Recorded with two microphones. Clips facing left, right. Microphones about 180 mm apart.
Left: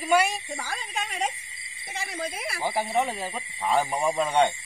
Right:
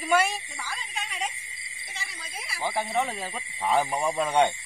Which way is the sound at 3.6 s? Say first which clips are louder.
Left 1 dB; 10° right (ahead or behind).